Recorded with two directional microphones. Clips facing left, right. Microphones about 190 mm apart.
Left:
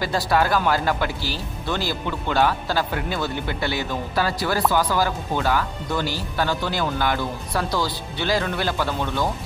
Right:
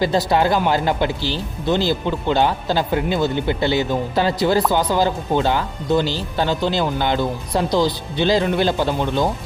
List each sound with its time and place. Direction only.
0.0 s speech: 25° right (ahead or behind)